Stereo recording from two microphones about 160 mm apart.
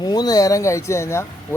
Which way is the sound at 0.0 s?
25° left (ahead or behind).